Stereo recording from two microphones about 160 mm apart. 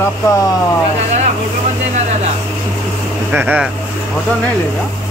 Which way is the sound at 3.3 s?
10° right (ahead or behind).